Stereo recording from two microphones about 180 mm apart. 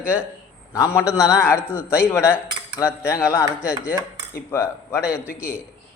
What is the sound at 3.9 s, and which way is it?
Cutlery, 15° left (ahead or behind).